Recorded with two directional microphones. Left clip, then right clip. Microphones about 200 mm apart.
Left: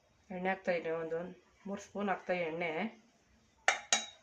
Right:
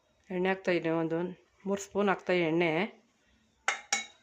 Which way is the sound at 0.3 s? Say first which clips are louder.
Right 5 dB; 60° right (ahead or behind).